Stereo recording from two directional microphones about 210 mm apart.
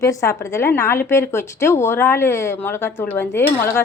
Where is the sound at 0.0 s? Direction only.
15° left (ahead or behind).